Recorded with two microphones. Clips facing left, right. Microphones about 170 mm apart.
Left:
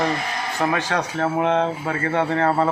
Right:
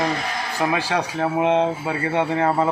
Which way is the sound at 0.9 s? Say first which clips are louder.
Even; 15° right (ahead or behind).